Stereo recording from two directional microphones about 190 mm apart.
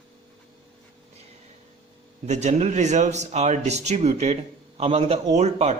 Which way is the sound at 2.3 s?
35° right (ahead or behind).